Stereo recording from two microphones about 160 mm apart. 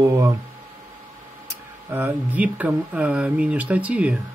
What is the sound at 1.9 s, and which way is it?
Speech, 10° right (ahead or behind).